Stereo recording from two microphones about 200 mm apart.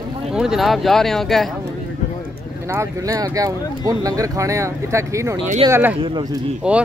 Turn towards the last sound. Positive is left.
turn(degrees=-5)  # may be behind; listen again after turning